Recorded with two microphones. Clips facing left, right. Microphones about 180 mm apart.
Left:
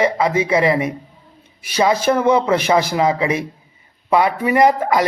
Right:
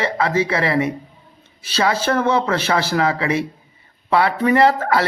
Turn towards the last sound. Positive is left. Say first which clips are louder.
# left 1 dB
turn(degrees=15)  # may be behind; listen again after turning